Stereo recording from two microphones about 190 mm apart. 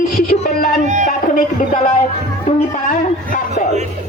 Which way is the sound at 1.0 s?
45° left (ahead or behind).